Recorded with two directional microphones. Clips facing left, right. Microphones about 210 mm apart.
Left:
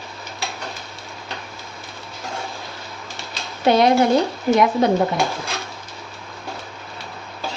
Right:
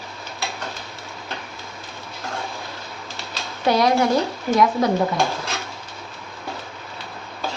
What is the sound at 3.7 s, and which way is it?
A woman's voice, 25° left (ahead or behind).